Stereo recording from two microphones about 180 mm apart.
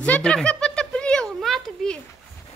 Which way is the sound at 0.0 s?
5° left (ahead or behind).